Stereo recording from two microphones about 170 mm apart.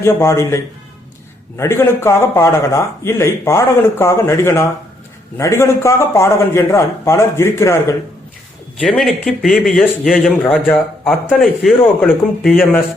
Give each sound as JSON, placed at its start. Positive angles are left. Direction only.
{"t": 0.0, "sound": "a man's voice", "side_deg": 15}
{"t": 8.8, "sound": "a man's voice", "side_deg": 0}
{"t": 11.3, "sound": "speech", "side_deg": 0}